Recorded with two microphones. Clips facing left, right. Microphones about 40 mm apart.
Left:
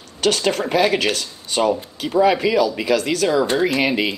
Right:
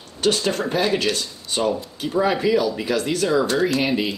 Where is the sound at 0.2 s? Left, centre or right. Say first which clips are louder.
Left 2 dB; left.